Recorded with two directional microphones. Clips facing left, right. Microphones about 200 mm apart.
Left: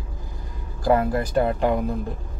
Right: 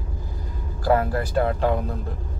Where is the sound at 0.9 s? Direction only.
15° left (ahead or behind).